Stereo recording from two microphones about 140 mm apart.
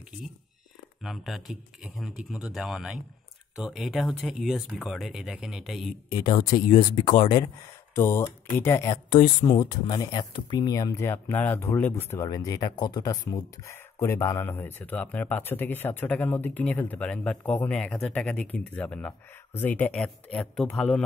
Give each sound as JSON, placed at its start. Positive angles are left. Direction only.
{"t": 1.0, "sound": "speech", "side_deg": 0}
{"t": 6.2, "sound": "speech", "side_deg": 35}
{"t": 7.9, "sound": "speech", "side_deg": 20}